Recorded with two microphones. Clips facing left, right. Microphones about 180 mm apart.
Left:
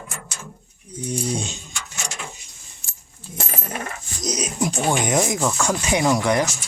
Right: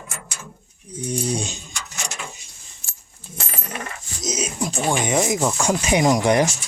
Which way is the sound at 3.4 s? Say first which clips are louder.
Left 3 dB; 45° left (ahead or behind).